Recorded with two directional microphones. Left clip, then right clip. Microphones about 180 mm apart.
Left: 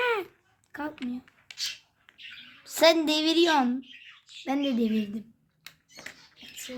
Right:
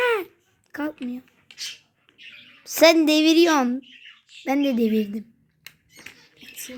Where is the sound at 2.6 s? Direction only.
35° right (ahead or behind).